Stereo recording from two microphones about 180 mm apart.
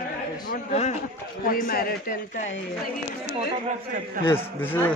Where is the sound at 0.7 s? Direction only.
40° left (ahead or behind).